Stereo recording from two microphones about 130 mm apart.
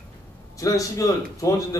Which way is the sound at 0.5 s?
25° left (ahead or behind).